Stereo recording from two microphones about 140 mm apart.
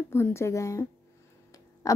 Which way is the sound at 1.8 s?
25° left (ahead or behind).